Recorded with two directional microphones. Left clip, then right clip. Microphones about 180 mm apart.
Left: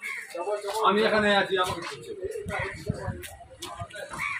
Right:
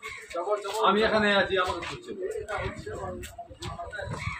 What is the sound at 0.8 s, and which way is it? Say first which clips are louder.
Speech: left 1 dB; 45° left (ahead or behind).